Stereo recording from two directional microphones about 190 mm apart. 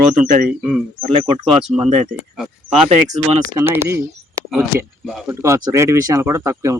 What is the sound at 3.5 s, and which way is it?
Speech, 15° right (ahead or behind).